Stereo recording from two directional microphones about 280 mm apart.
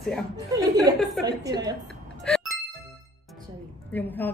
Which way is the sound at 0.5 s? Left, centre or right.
Centre.